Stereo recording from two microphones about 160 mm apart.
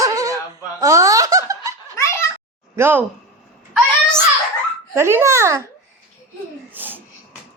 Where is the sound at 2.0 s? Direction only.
15° left (ahead or behind).